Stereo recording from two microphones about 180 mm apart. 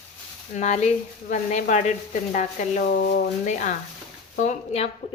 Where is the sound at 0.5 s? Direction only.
40° left (ahead or behind).